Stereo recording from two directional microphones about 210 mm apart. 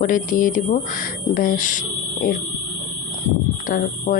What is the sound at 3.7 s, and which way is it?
Speech, 40° left (ahead or behind).